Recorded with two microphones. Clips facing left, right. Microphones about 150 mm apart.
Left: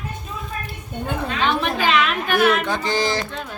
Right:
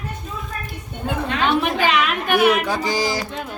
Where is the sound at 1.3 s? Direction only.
15° right (ahead or behind).